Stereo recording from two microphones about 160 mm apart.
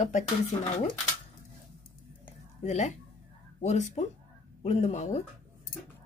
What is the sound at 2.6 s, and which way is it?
A woman's voice, 45° left (ahead or behind).